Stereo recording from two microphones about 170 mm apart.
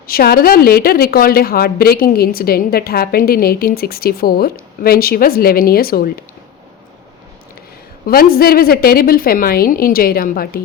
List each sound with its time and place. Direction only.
0.1 s a woman's voice: 60° left (ahead or behind)
8.0 s a woman's voice: 60° left (ahead or behind)